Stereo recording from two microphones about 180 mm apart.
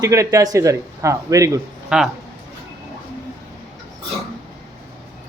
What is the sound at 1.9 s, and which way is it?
Music, 5° right (ahead or behind).